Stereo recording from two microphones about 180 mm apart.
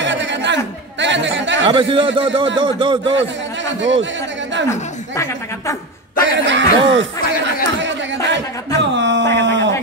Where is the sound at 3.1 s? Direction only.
90° right.